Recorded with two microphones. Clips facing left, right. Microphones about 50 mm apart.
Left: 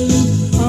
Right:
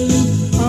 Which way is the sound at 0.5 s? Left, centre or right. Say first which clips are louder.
Even; right.